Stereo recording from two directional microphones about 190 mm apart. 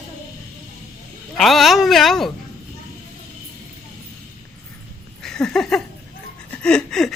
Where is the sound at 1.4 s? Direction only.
Centre (ahead or behind).